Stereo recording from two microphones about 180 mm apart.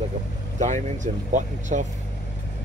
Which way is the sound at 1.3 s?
40° right (ahead or behind).